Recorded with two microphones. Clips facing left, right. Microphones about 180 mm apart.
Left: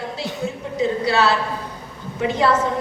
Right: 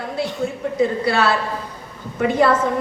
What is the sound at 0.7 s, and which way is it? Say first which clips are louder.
A woman's voice: even; 55° right (ahead or behind).